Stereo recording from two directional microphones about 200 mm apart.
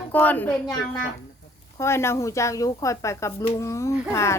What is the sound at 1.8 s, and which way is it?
Speech, 15° left (ahead or behind).